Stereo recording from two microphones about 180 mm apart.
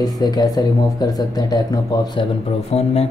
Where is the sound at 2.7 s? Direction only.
35° left (ahead or behind).